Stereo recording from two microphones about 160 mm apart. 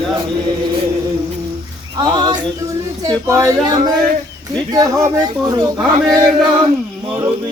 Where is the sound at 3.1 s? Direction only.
20° right (ahead or behind).